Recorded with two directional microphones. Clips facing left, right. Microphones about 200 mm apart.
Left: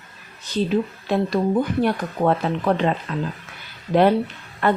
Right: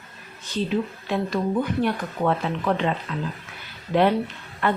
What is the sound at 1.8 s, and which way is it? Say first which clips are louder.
Speech: left 3 dB; 40° left (ahead or behind).